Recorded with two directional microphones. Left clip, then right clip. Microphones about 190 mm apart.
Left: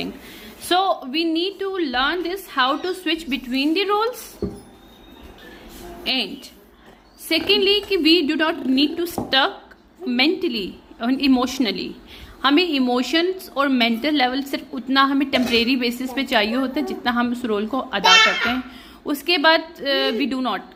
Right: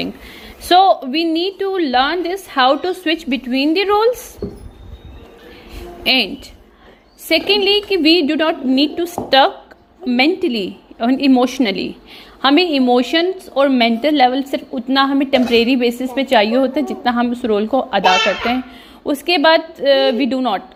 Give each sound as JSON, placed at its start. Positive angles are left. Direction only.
{"t": 0.0, "sound": "a woman's voice", "side_deg": -25}
{"t": 6.0, "sound": "a woman's voice", "side_deg": -25}